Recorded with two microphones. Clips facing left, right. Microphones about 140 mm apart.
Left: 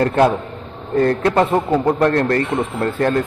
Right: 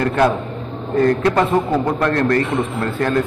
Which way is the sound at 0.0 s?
25° left (ahead or behind).